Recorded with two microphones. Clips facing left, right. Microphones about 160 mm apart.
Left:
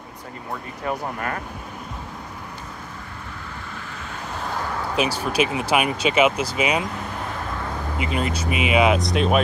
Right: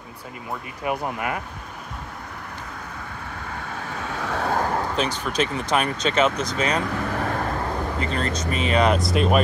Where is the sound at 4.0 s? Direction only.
75° right (ahead or behind).